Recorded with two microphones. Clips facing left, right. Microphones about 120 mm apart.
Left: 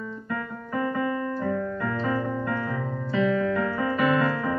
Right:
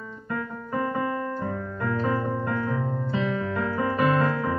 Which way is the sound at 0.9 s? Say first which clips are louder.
Left 1 dB; 35° right (ahead or behind).